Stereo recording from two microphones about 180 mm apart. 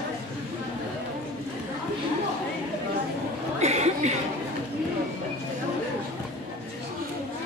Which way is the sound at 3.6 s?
40° right (ahead or behind).